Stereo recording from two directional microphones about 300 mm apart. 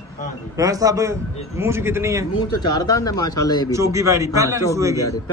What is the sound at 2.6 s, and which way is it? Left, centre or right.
Speech, centre.